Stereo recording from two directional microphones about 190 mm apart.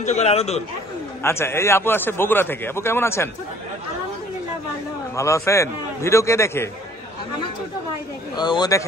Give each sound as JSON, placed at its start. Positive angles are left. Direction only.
{"t": 0.0, "sound": "speech", "side_deg": 35}
{"t": 1.2, "sound": "a man's voice", "side_deg": 15}
{"t": 5.1, "sound": "a man's voice", "side_deg": 15}
{"t": 8.4, "sound": "speech", "side_deg": 20}